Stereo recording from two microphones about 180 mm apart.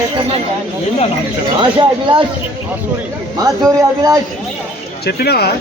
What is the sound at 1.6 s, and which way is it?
Speech, 25° right (ahead or behind).